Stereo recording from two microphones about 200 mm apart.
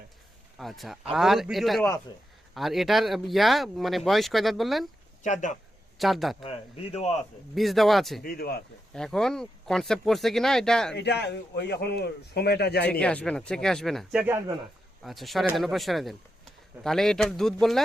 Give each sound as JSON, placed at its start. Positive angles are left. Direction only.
{"t": 0.6, "sound": "speech", "side_deg": 0}
{"t": 5.2, "sound": "speech", "side_deg": 40}
{"t": 6.0, "sound": "speech", "side_deg": 0}
{"t": 6.4, "sound": "speech", "side_deg": 30}
{"t": 7.5, "sound": "speech", "side_deg": 0}
{"t": 8.2, "sound": "speech", "side_deg": 50}
{"t": 8.9, "sound": "speech", "side_deg": 5}
{"t": 10.9, "sound": "speech", "side_deg": 55}
{"t": 12.9, "sound": "speech", "side_deg": 5}
{"t": 15.0, "sound": "speech", "side_deg": 0}